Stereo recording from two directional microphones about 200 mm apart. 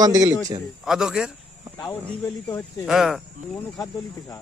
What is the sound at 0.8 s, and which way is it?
Speech, 5° right (ahead or behind).